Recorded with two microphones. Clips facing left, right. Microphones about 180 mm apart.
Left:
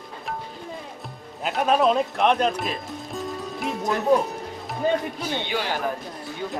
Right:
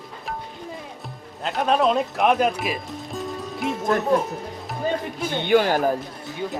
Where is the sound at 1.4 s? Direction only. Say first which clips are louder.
Even; 5° left (ahead or behind).